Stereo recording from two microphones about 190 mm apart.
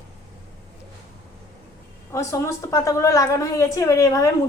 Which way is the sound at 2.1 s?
15° left (ahead or behind).